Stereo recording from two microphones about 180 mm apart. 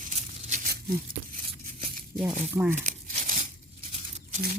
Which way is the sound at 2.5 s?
15° right (ahead or behind).